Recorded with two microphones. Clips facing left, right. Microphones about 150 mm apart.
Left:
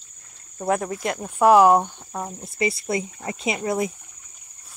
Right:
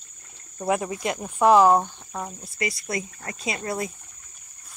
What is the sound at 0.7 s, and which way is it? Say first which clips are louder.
Speech: left 1 dB; 10° right (ahead or behind).